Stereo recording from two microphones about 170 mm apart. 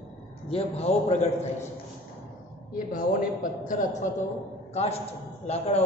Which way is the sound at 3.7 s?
45° left (ahead or behind).